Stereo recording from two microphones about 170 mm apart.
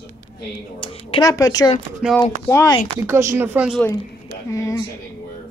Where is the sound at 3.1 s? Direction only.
15° right (ahead or behind).